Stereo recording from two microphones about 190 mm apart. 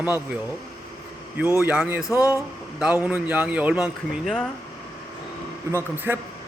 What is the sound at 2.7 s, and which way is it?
A man's voice, 5° right (ahead or behind).